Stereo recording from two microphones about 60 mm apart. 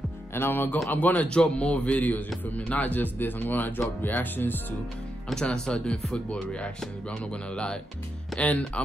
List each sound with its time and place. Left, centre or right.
0.3 s speech: left
0.9 s a man's voice: left
5.3 s music: centre
8.4 s a man's voice: left